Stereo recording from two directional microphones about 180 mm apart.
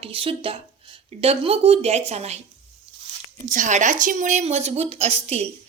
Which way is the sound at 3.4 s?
45° right (ahead or behind).